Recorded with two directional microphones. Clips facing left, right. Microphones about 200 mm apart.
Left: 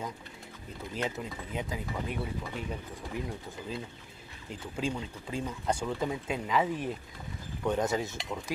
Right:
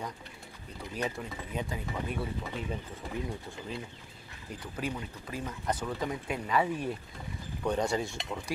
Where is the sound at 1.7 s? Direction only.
5° left (ahead or behind).